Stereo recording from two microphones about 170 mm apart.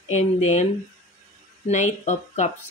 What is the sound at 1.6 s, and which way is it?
Speech, 45° left (ahead or behind).